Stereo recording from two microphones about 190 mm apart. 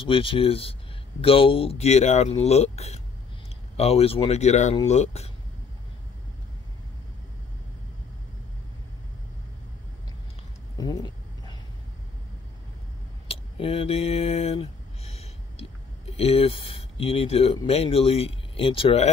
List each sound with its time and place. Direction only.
0.0 s speech: 30° left (ahead or behind)
10.8 s vehicle: 20° left (ahead or behind)
13.3 s a sound: 30° left (ahead or behind)
16.2 s speech: 30° left (ahead or behind)